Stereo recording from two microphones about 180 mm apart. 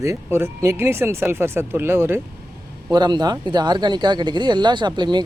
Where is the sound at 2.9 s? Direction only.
25° right (ahead or behind).